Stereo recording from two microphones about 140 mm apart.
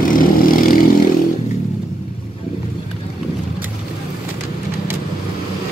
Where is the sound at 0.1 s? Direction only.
90° left.